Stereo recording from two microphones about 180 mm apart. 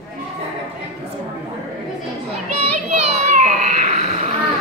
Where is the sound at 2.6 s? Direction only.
35° right (ahead or behind).